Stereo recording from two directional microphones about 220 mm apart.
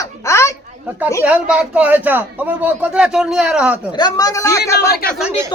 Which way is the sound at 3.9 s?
20° left (ahead or behind).